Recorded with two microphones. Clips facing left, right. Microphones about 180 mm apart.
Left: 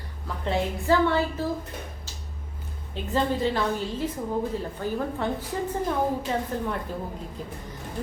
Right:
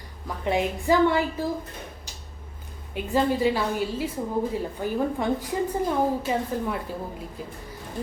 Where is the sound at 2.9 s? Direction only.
10° right (ahead or behind).